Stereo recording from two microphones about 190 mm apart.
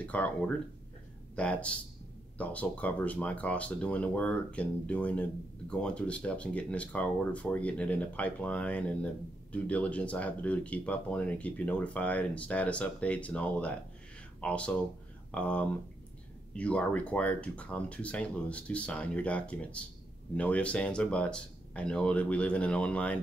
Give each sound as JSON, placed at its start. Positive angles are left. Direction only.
{"t": 0.0, "sound": "speech", "side_deg": 5}